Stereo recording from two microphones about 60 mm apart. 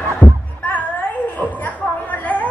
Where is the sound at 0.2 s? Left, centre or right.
Left.